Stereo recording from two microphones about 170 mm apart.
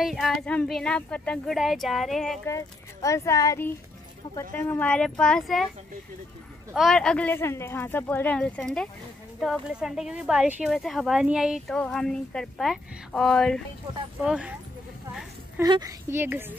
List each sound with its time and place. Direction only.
0.0 s speech: centre (ahead or behind)
2.4 s speech: 20° left (ahead or behind); by 5.7 s 5° left (ahead or behind)
6.7 s speech: centre (ahead or behind)
15.6 s speech: 20° right (ahead or behind)